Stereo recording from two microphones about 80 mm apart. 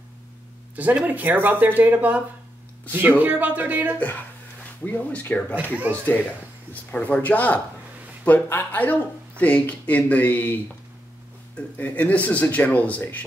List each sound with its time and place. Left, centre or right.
0.7 s speech: right
4.8 s speech: left
5.9 s speech: centre
6.7 s speech: centre